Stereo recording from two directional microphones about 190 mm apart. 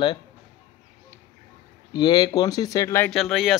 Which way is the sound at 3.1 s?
Centre (ahead or behind).